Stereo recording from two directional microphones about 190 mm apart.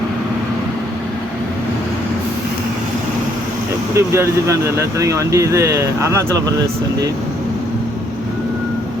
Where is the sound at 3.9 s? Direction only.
15° right (ahead or behind).